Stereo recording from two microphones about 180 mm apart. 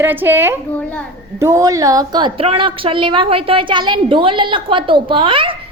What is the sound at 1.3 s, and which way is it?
A woman's voice, 15° right (ahead or behind).